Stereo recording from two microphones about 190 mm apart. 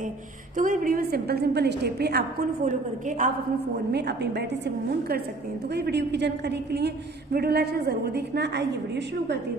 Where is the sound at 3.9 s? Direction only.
60° right (ahead or behind).